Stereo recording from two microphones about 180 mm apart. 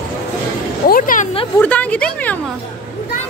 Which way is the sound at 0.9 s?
50° left (ahead or behind).